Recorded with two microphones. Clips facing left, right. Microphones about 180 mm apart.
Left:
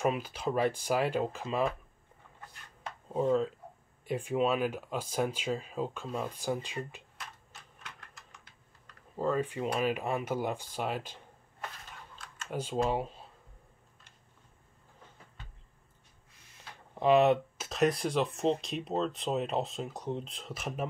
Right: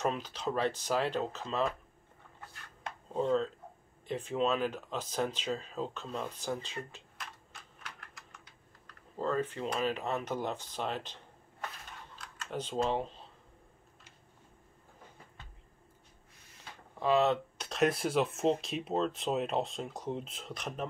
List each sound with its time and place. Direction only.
0.0 s speech: 10° left (ahead or behind)
3.1 s speech: 10° left (ahead or behind)
9.1 s speech: 10° left (ahead or behind)
12.4 s speech: 10° left (ahead or behind)
17.0 s speech: 15° left (ahead or behind)
17.6 s speech: centre (ahead or behind)